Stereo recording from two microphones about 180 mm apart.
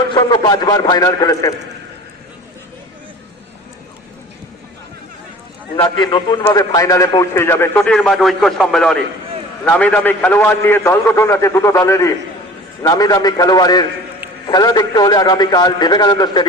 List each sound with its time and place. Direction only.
0.1 s a man's voice: 25° left (ahead or behind)
5.8 s a man's voice: 25° left (ahead or behind)